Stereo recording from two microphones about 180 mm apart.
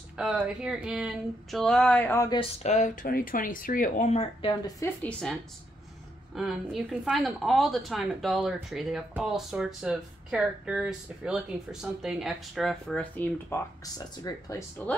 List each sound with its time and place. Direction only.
0.2 s speech: 5° right (ahead or behind)
2.6 s speech: 40° left (ahead or behind); by 4.9 s 20° left (ahead or behind)
6.3 s speech: centre (ahead or behind)
13.9 s speech: 20° left (ahead or behind)